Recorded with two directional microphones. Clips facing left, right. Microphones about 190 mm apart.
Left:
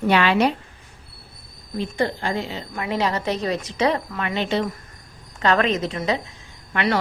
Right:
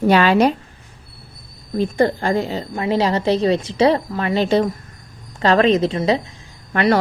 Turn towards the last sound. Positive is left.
turn(degrees=-40)  # may be behind; listen again after turning